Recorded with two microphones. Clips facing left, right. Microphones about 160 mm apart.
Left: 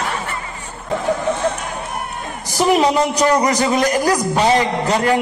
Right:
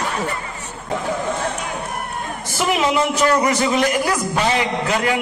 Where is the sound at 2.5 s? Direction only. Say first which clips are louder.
Left 4 dB; 40° left (ahead or behind).